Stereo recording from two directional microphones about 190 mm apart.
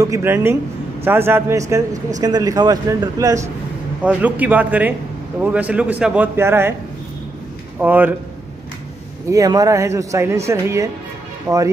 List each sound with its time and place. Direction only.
0.0 s a man's voice: 15° right (ahead or behind)
4.0 s a man's voice: 10° right (ahead or behind)
7.8 s a man's voice: 10° right (ahead or behind)
9.3 s a man's voice: 20° right (ahead or behind)